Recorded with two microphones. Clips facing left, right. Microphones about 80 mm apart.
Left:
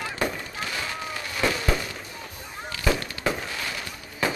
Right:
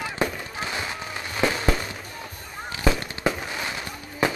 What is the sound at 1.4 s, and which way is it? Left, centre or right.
Fireworks, right.